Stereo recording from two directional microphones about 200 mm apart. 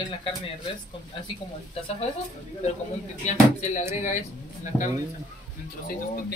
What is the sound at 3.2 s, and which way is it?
Speech, 35° left (ahead or behind).